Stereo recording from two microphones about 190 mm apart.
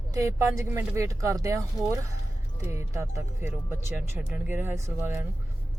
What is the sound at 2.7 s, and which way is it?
Speech, 15° right (ahead or behind).